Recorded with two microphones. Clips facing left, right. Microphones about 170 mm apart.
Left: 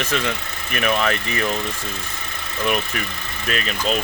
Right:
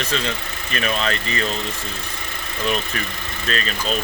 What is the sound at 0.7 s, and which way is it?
Speech, 15° left (ahead or behind).